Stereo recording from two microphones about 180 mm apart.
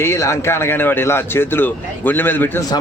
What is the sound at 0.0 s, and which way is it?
Speech, 15° left (ahead or behind).